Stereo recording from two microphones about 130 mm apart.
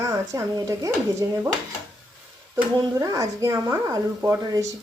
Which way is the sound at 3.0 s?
25° right (ahead or behind).